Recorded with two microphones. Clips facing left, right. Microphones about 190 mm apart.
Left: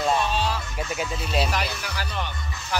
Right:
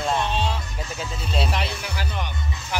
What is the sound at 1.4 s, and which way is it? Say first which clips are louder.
Speech: right 1 dB; 25° right (ahead or behind).